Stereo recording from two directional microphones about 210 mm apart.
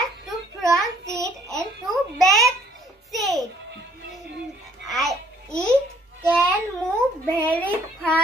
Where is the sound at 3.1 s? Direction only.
Centre (ahead or behind).